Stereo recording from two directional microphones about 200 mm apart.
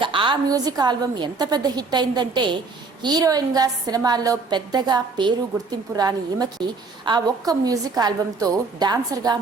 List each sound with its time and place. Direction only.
0.0 s a woman's voice: 25° right (ahead or behind)